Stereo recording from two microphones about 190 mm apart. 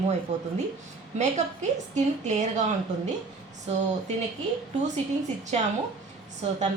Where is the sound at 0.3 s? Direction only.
35° right (ahead or behind).